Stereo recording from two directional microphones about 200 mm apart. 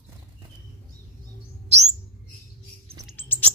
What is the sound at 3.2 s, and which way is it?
Bird, 10° left (ahead or behind).